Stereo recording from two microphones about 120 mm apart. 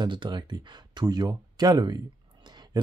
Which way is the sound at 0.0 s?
40° right (ahead or behind).